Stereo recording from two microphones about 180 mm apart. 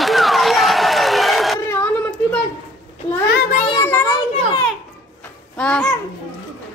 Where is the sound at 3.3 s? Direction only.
55° left (ahead or behind).